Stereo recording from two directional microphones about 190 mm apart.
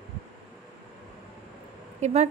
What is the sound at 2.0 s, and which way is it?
Speech, 35° right (ahead or behind).